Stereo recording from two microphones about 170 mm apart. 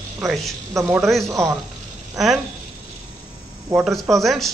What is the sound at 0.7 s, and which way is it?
Speech, 20° right (ahead or behind).